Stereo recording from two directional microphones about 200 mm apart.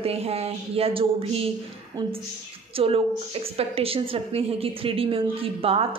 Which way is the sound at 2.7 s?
30° right (ahead or behind).